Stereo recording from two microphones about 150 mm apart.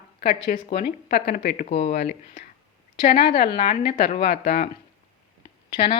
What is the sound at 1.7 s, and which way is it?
Speech, 45° left (ahead or behind).